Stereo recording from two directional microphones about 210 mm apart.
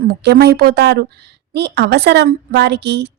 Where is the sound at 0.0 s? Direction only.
50° right (ahead or behind).